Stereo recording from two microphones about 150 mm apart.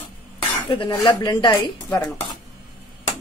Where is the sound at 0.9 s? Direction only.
25° left (ahead or behind).